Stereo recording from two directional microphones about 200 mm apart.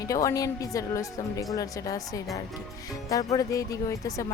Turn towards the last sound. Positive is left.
turn(degrees=15)  # may be behind; listen again after turning